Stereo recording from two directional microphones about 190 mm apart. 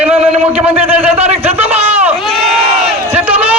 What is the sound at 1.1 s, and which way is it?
Speech, 35° right (ahead or behind).